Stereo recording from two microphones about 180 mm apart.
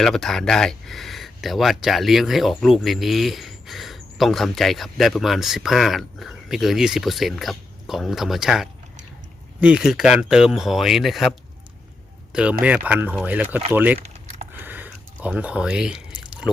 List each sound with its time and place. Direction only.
0.0 s speech: centre (ahead or behind)
14.0 s typing: 40° right (ahead or behind)
14.5 s a sound: 10° right (ahead or behind)